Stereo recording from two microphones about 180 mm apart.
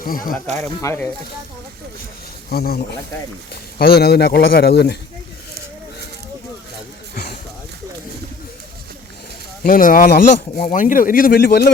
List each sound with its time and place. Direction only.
0.0 s speech: 50° left (ahead or behind)
0.3 s speech: centre (ahead or behind)
0.8 s speech: 15° left (ahead or behind)
2.5 s speech: 60° left (ahead or behind)
9.6 s speech: 50° left (ahead or behind)